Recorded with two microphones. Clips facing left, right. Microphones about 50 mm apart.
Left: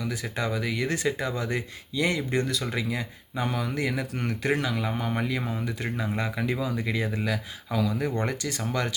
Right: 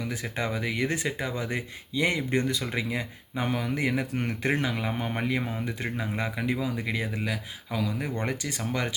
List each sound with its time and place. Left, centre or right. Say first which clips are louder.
0.0 s speech: left 1 dB; right
6.0 s speech: left 3 dB; centre